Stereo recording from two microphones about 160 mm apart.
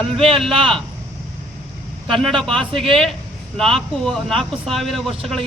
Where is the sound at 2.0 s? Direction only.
5° left (ahead or behind).